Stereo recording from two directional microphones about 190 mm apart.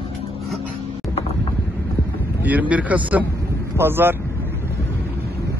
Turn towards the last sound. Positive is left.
turn(degrees=-10)  # may be behind; listen again after turning